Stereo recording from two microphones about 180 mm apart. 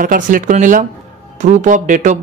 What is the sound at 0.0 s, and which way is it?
A man's voice, 50° right (ahead or behind).